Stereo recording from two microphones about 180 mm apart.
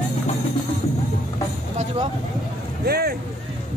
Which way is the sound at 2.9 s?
60° right (ahead or behind).